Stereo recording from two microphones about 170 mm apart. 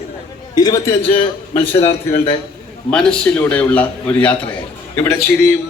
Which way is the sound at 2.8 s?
5° left (ahead or behind).